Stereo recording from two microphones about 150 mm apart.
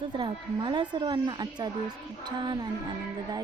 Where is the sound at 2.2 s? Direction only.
30° right (ahead or behind).